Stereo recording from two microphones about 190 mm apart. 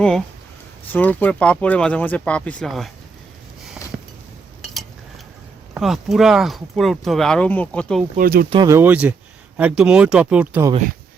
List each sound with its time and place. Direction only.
0.9 s speech: 10° left (ahead or behind)
4.7 s a sound: centre (ahead or behind)
5.7 s speech: centre (ahead or behind)
8.1 s speech: 50° right (ahead or behind)
8.4 s speech: 20° right (ahead or behind)